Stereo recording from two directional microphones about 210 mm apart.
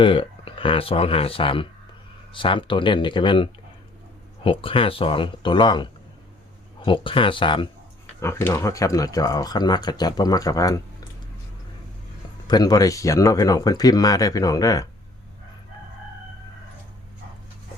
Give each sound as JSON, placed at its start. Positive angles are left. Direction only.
{"t": 0.0, "sound": "speech", "side_deg": 25}
{"t": 8.2, "sound": "speech", "side_deg": 10}
{"t": 12.5, "sound": "speech", "side_deg": 20}